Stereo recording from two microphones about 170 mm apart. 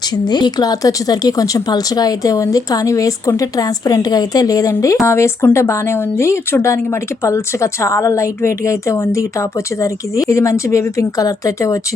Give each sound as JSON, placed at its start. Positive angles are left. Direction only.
{"t": 0.3, "sound": "a woman's voice", "side_deg": 25}